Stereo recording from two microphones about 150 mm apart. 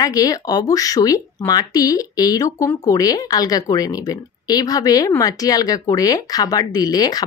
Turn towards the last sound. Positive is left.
turn(degrees=25)  # may be behind; listen again after turning